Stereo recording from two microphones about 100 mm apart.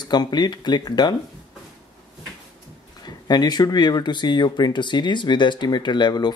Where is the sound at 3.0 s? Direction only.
45° left (ahead or behind).